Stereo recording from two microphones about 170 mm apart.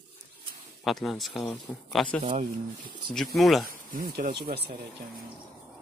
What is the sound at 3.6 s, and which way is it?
Speech, 60° right (ahead or behind).